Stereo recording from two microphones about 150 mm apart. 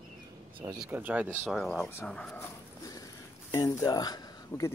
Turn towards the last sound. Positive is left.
turn(degrees=25)  # may be behind; listen again after turning